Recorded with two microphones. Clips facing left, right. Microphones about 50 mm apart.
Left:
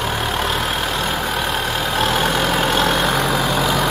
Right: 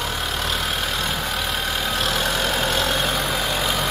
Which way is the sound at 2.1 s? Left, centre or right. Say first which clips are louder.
Left 5 dB; left.